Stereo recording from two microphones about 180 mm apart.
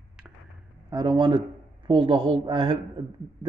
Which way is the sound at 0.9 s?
20° right (ahead or behind).